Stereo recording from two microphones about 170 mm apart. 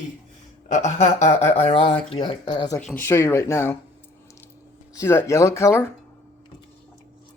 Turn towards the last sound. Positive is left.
turn(degrees=15)  # may be behind; listen again after turning